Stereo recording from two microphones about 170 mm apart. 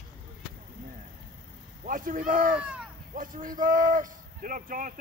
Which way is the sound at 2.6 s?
5° right (ahead or behind).